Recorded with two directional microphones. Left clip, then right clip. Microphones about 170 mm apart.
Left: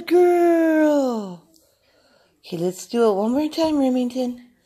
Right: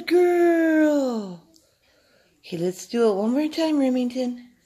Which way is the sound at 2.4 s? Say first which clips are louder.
Left 2 dB; 20° left (ahead or behind).